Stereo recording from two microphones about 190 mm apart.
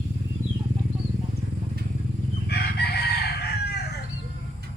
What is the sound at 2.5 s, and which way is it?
Chicken, 60° left (ahead or behind).